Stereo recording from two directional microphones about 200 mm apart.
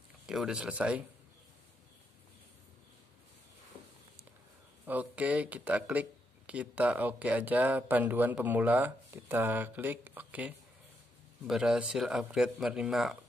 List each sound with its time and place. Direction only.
0.3 s speech: 5° right (ahead or behind)
4.8 s speech: 5° right (ahead or behind)